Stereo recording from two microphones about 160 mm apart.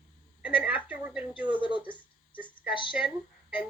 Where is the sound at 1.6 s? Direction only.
30° left (ahead or behind).